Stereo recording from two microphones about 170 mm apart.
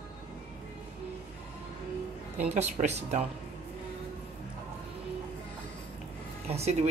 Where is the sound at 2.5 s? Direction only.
40° right (ahead or behind).